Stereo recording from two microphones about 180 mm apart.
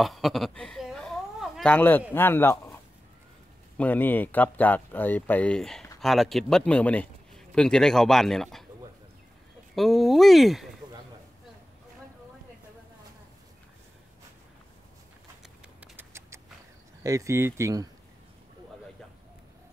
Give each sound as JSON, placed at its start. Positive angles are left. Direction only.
{"t": 0.0, "sound": "speech", "side_deg": 0}
{"t": 9.8, "sound": "speech", "side_deg": 0}
{"t": 15.4, "sound": "a sound", "side_deg": -10}
{"t": 17.0, "sound": "speech", "side_deg": -15}